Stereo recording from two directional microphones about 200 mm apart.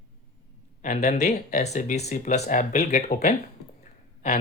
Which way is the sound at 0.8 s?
40° left (ahead or behind).